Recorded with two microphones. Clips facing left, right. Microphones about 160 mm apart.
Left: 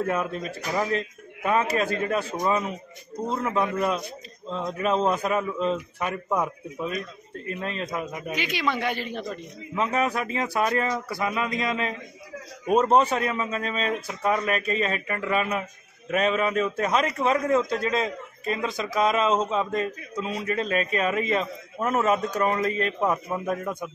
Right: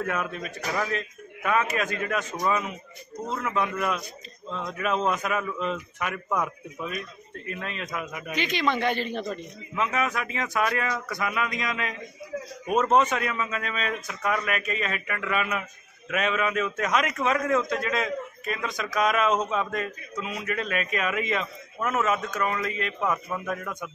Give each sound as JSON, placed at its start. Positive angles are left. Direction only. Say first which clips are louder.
{"t": 0.0, "sound": "a man's voice", "louder": "left 3 dB", "side_deg": 30}
{"t": 8.4, "sound": "a man's voice", "louder": "right 2 dB", "side_deg": 10}
{"t": 9.8, "sound": "a man's voice", "louder": "left 2 dB", "side_deg": 35}